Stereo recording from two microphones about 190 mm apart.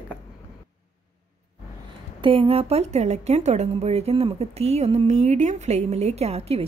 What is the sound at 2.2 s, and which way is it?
A woman's voice, 30° right (ahead or behind).